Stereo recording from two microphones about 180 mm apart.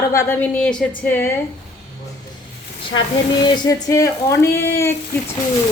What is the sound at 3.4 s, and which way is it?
A woman's voice, 25° left (ahead or behind).